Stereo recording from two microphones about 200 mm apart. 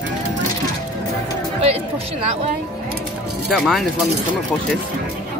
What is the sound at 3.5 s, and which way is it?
Speech, centre (ahead or behind).